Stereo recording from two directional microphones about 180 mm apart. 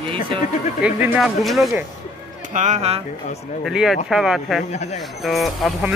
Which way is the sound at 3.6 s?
Centre (ahead or behind).